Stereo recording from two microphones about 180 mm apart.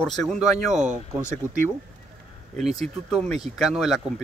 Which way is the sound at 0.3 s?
40° right (ahead or behind).